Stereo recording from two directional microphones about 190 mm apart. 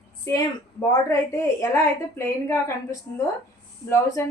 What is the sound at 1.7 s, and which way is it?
A woman's voice, 15° left (ahead or behind).